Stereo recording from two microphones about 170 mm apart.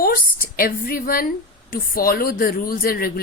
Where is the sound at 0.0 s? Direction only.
60° left (ahead or behind).